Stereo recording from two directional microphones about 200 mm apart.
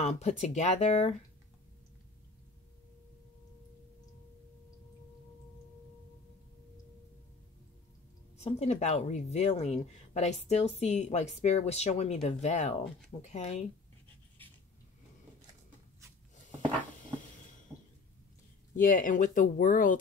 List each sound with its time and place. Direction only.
0.0 s speech: 35° left (ahead or behind)
8.4 s speech: 35° left (ahead or behind)
18.8 s speech: 40° left (ahead or behind)